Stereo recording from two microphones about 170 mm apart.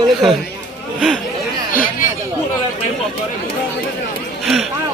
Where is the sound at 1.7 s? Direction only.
55° left (ahead or behind).